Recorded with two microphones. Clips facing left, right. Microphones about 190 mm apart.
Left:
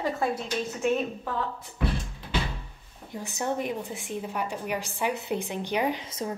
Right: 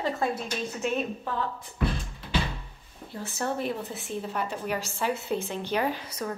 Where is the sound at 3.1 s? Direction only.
15° left (ahead or behind).